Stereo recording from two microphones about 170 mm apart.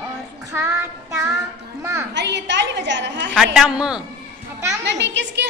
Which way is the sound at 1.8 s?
15° right (ahead or behind).